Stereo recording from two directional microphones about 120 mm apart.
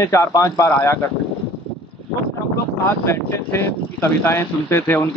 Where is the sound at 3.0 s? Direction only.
20° left (ahead or behind).